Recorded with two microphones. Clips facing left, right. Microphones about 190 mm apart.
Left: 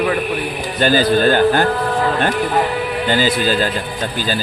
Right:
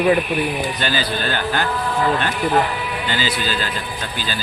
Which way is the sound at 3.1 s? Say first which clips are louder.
Left 8 dB; 45° left (ahead or behind).